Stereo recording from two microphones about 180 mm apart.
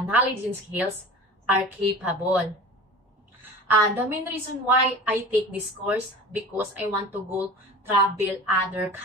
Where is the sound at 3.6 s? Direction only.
10° right (ahead or behind).